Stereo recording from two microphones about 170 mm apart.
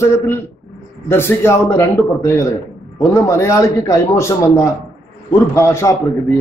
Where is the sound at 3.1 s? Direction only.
15° left (ahead or behind).